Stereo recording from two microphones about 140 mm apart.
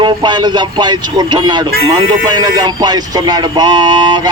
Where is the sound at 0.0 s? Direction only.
35° right (ahead or behind).